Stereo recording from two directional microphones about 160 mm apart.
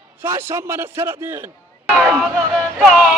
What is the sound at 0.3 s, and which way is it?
Speech, 15° right (ahead or behind).